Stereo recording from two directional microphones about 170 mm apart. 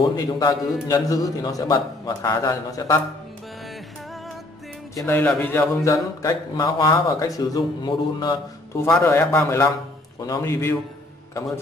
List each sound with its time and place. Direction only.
0.1 s speech: 25° left (ahead or behind)
4.9 s speech: 10° left (ahead or behind)